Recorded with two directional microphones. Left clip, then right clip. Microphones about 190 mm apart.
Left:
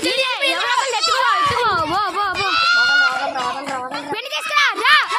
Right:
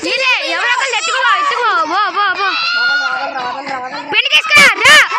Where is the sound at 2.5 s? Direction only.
40° left (ahead or behind).